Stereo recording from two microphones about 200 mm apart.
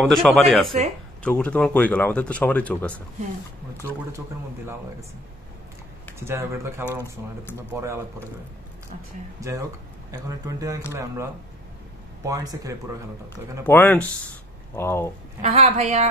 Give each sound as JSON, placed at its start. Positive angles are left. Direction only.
{"t": 0.0, "sound": "speech", "side_deg": 0}
{"t": 6.1, "sound": "speech", "side_deg": -10}
{"t": 9.4, "sound": "speech", "side_deg": -15}
{"t": 12.3, "sound": "speech", "side_deg": -15}
{"t": 13.7, "sound": "speech", "side_deg": 10}
{"t": 15.4, "sound": "a woman's voice", "side_deg": -30}